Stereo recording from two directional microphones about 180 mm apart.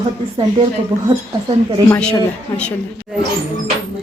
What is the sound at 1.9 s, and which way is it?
Speech, 5° left (ahead or behind).